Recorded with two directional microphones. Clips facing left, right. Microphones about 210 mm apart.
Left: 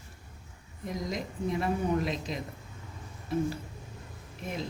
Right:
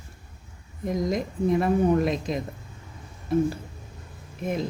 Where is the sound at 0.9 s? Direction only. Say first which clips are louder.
Right 8 dB; 50° right (ahead or behind).